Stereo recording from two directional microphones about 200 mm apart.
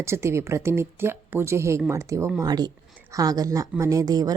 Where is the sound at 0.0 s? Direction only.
15° right (ahead or behind).